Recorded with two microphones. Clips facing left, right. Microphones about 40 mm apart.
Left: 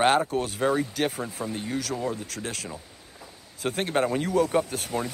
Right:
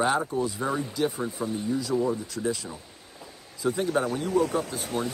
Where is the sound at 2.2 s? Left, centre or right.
Left.